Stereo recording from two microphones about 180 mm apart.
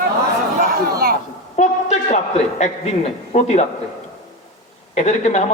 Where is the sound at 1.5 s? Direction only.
40° left (ahead or behind).